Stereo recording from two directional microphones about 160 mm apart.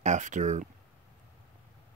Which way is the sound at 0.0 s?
50° right (ahead or behind).